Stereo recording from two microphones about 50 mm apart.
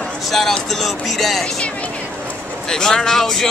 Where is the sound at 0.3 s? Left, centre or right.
Centre.